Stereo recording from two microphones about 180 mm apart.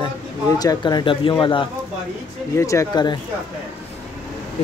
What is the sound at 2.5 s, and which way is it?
Speech, 15° left (ahead or behind).